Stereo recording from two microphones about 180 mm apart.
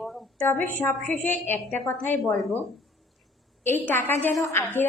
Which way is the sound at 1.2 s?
10° left (ahead or behind).